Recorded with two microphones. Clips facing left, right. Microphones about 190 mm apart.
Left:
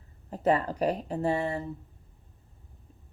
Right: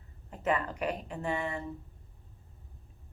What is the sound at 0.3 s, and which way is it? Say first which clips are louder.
Speech: left 5 dB; 35° left (ahead or behind).